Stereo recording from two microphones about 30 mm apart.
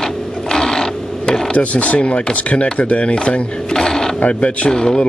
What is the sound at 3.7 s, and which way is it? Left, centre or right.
Mechanisms, centre.